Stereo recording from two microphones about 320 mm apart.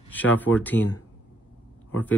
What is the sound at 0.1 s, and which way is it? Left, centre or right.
Speech, centre.